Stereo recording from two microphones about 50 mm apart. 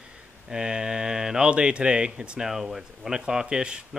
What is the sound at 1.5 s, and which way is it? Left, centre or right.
Speech, right.